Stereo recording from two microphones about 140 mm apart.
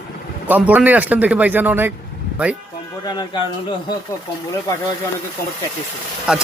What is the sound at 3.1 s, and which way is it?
Speech, 30° left (ahead or behind).